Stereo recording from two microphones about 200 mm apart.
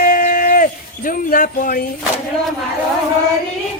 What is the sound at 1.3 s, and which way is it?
Speech, 45° left (ahead or behind).